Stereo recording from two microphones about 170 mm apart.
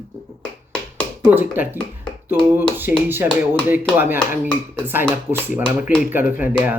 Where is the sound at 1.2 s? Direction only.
10° right (ahead or behind).